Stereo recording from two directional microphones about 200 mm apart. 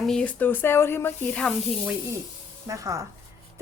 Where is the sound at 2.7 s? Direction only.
15° right (ahead or behind).